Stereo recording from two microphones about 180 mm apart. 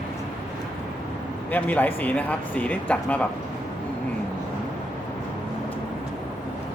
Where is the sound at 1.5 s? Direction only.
10° left (ahead or behind).